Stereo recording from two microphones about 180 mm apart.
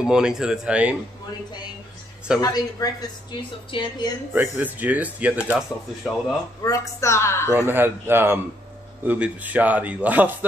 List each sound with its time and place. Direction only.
0.0 s speech: 5° right (ahead or behind)
2.4 s a woman's voice: 20° left (ahead or behind)
4.3 s a man's voice: 10° right (ahead or behind)
6.6 s a woman's voice: 20° left (ahead or behind)
7.5 s a man's voice: 10° right (ahead or behind)